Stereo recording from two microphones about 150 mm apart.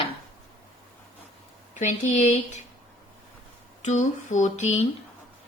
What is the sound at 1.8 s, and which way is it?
Speech, 55° left (ahead or behind).